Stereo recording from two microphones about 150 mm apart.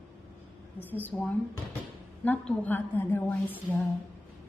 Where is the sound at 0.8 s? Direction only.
10° left (ahead or behind).